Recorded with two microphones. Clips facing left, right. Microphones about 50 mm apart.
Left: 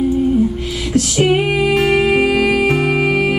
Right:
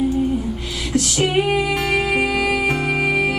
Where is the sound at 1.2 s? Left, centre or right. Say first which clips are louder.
Left 4 dB; centre.